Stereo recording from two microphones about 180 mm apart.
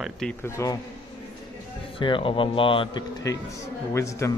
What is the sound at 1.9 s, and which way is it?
A man's voice, 30° left (ahead or behind).